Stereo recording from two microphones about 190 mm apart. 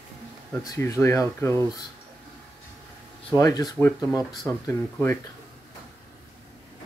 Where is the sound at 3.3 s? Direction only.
20° left (ahead or behind).